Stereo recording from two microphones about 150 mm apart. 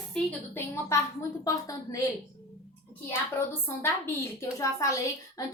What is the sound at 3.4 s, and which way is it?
Speech, 15° left (ahead or behind).